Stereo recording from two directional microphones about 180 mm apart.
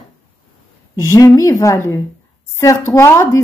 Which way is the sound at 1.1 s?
20° left (ahead or behind).